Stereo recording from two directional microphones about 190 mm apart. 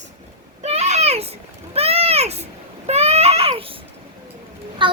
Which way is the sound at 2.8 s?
35° right (ahead or behind).